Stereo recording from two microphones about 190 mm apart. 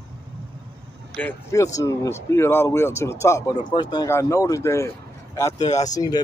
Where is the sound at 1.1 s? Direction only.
10° left (ahead or behind).